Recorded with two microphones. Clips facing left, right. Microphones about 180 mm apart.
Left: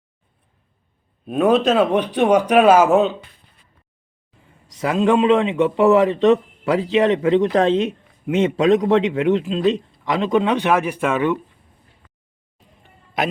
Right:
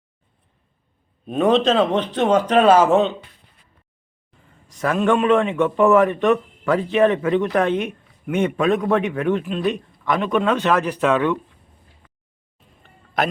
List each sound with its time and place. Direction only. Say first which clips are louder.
1.2 s speech: left 1 dB; 5° left (ahead or behind)
4.8 s a man's voice: left 2 dB; 20° left (ahead or behind)